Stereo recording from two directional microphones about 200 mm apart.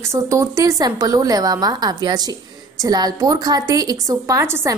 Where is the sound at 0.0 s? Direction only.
15° right (ahead or behind).